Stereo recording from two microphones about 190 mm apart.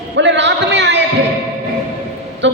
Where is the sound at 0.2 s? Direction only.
70° right (ahead or behind).